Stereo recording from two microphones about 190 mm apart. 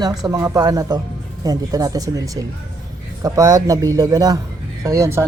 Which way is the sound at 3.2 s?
20° right (ahead or behind).